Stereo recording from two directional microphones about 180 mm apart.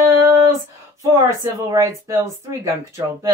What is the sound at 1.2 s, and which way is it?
Speech, 15° right (ahead or behind).